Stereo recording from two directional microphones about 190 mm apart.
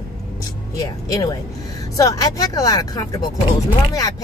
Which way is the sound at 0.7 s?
20° left (ahead or behind).